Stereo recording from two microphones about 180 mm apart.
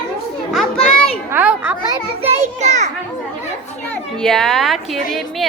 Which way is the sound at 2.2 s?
40° right (ahead or behind).